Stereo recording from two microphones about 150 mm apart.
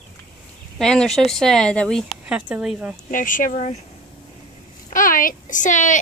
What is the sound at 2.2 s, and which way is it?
Speech, 10° right (ahead or behind).